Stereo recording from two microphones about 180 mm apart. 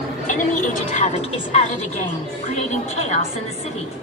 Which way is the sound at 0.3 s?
45° left (ahead or behind).